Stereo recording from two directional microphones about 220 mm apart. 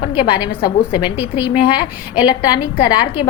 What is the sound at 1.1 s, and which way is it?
Speech, 10° right (ahead or behind).